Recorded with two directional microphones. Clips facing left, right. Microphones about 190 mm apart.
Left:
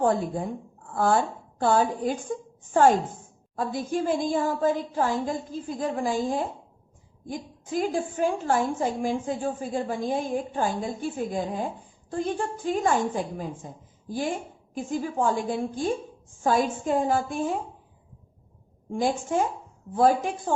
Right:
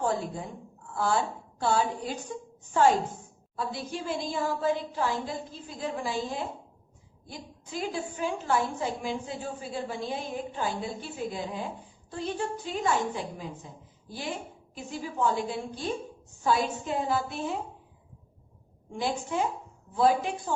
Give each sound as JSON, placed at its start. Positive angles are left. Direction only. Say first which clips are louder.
{"t": 0.0, "sound": "a woman's voice", "louder": "left 6 dB", "side_deg": 50}
{"t": 18.9, "sound": "a woman's voice", "louder": "left 5 dB", "side_deg": 50}